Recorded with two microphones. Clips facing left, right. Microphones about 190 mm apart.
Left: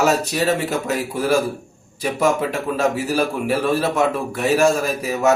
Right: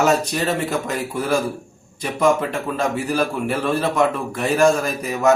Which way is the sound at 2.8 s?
5° left (ahead or behind).